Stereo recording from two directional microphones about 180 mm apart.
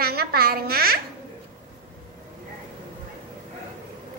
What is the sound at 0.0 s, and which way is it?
Babbling, 60° right (ahead or behind).